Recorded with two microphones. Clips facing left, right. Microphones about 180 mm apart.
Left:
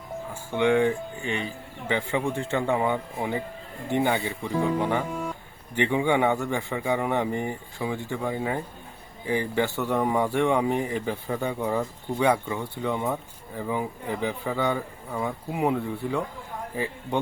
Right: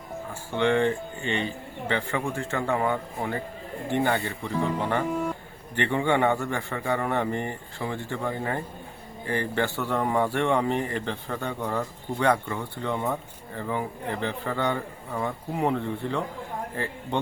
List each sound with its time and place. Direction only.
0.5 s speech: 10° left (ahead or behind)
1.9 s speech: 15° left (ahead or behind)
5.1 s a sound: centre (ahead or behind)
5.7 s speech: 10° left (ahead or behind)